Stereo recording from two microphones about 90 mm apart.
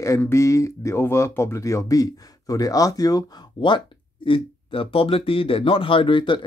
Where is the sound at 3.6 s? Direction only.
65° left (ahead or behind).